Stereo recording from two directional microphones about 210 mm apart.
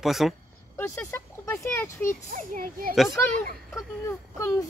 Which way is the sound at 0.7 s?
10° left (ahead or behind).